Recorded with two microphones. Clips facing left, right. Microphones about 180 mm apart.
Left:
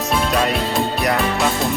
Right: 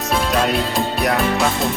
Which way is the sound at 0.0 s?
Centre (ahead or behind).